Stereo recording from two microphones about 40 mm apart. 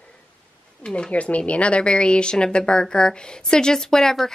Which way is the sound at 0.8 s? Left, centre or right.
Left.